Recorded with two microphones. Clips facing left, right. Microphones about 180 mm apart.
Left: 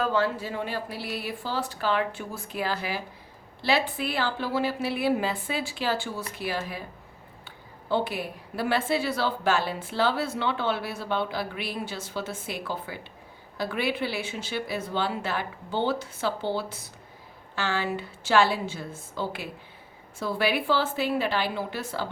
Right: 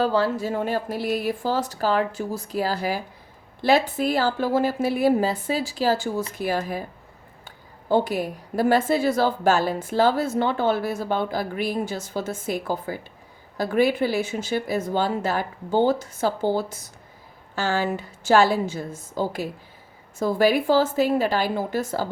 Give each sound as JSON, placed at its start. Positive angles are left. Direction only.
{"t": 0.0, "sound": "a woman's voice", "side_deg": -35}